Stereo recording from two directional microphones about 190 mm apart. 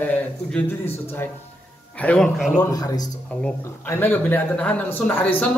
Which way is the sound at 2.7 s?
20° left (ahead or behind).